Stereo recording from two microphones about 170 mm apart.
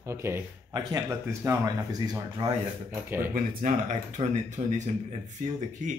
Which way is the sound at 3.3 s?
55° right (ahead or behind).